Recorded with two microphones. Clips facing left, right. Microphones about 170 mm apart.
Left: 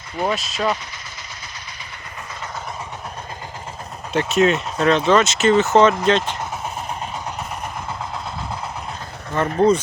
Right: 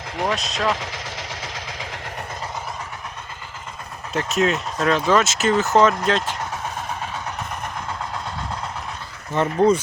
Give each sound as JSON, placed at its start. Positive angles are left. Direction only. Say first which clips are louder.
{"t": 0.3, "sound": "speech", "louder": "right 2 dB", "side_deg": 0}
{"t": 0.6, "sound": "vehicle", "louder": "left 1 dB", "side_deg": -90}
{"t": 4.1, "sound": "speech", "louder": "left 4 dB", "side_deg": 0}
{"t": 9.3, "sound": "speech", "louder": "left 1 dB", "side_deg": -20}